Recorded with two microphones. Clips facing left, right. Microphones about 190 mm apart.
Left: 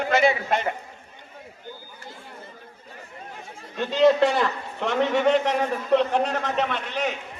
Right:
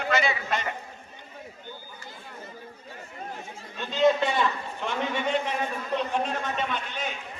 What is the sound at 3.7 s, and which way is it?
A man's voice, 75° left (ahead or behind).